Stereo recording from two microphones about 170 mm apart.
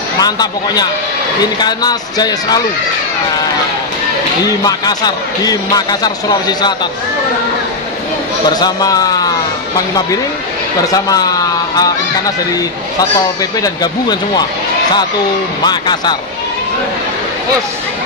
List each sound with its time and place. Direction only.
0.2 s a man's voice: 25° left (ahead or behind)
4.6 s a man's voice: 25° left (ahead or behind)
8.5 s a man's voice: 20° left (ahead or behind)
10.9 s a man's voice: 20° left (ahead or behind)
13.4 s a man's voice: 25° left (ahead or behind)
15.6 s a man's voice: 25° left (ahead or behind)